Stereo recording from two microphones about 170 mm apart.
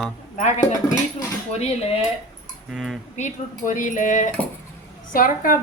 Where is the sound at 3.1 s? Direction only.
45° left (ahead or behind).